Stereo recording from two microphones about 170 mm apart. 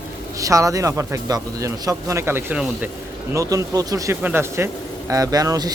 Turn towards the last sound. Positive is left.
turn(degrees=-20)  # may be behind; listen again after turning